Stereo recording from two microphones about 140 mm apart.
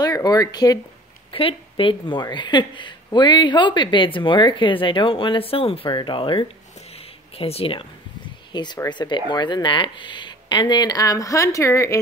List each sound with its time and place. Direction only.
0.0 s speech: 25° left (ahead or behind)
1.3 s speech: 40° left (ahead or behind)
8.8 s speech: 35° left (ahead or behind)